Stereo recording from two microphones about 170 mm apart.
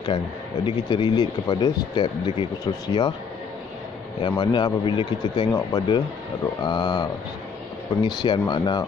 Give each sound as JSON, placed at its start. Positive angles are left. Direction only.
{"t": 0.7, "sound": "speech", "side_deg": 25}
{"t": 4.2, "sound": "speech", "side_deg": 25}